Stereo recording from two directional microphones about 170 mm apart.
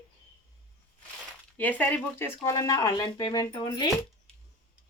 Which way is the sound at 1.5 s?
10° left (ahead or behind).